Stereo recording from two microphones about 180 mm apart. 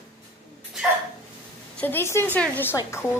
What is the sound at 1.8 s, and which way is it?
Speech, 10° left (ahead or behind).